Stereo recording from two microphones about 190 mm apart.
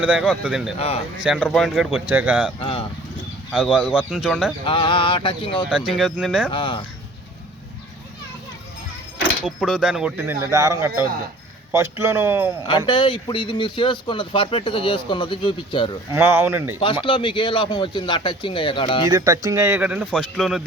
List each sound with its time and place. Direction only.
0.0 s speech: 5° right (ahead or behind)
2.6 s speech: 30° left (ahead or behind)
3.5 s speech: 5° right (ahead or behind)
4.6 s speech: 25° left (ahead or behind)
5.7 s speech: 5° right (ahead or behind)
6.5 s speech: 25° left (ahead or behind)
9.4 s speech: centre (ahead or behind)
12.6 s speech: 25° left (ahead or behind)
16.1 s speech: 15° right (ahead or behind)
16.8 s speech: 25° left (ahead or behind)
19.0 s speech: 20° right (ahead or behind); by 20.6 s centre (ahead or behind)